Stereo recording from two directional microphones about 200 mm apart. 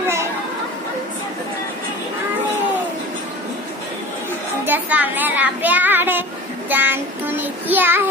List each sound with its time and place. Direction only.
4.6 s child singing: 10° right (ahead or behind)